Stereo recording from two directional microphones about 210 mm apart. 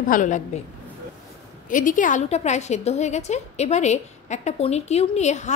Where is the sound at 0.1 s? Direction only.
35° left (ahead or behind).